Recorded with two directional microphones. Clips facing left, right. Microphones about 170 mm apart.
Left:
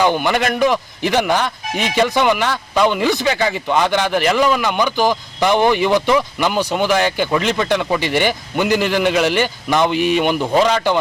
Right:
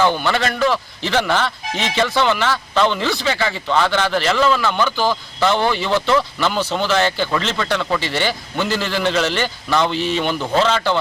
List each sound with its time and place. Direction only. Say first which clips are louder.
0.0 s a man's voice: left 2 dB; 15° left (ahead or behind)